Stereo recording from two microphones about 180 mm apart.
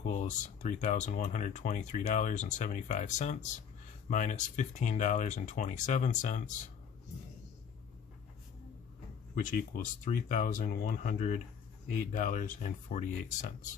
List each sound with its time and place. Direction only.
0.0 s speech: 40° left (ahead or behind)
10.0 s speech: 45° left (ahead or behind)